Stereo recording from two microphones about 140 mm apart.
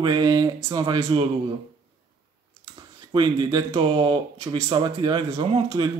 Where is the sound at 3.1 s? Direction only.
35° right (ahead or behind).